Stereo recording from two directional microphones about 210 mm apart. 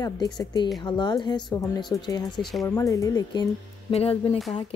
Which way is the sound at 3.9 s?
30° left (ahead or behind).